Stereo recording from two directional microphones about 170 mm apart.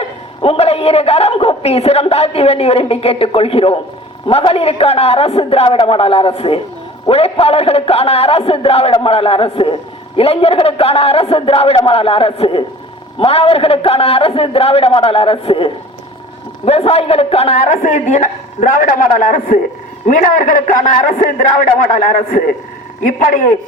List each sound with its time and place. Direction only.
0.0 s a man's voice: 35° left (ahead or behind); by 23.5 s 55° left (ahead or behind)